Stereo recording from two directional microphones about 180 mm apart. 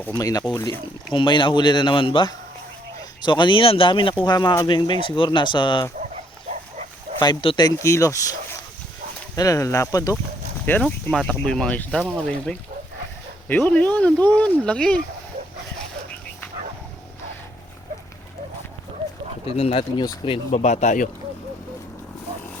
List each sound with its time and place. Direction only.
0.0 s speech: 15° left (ahead or behind)
6.5 s pig: 40° right (ahead or behind)
7.2 s speech: 25° left (ahead or behind)
9.3 s speech: 20° left (ahead or behind)
10.7 s speech: 5° left (ahead or behind)
19.5 s speech: 35° left (ahead or behind)